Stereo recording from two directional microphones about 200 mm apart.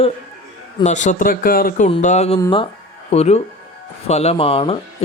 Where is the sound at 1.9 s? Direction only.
35° left (ahead or behind).